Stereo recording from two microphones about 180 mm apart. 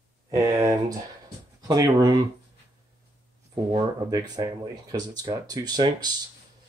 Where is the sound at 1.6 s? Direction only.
20° right (ahead or behind).